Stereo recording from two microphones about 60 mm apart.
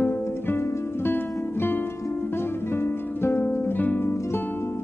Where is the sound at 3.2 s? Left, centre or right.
Left.